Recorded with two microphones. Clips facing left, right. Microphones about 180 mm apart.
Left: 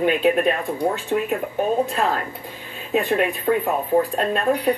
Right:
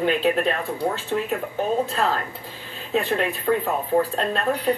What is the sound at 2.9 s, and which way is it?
Speech, 15° left (ahead or behind).